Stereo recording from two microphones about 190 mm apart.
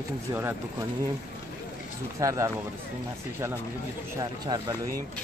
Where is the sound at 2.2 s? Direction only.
15° right (ahead or behind).